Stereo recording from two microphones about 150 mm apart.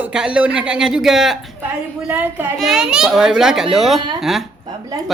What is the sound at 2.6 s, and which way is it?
Speech, 5° right (ahead or behind).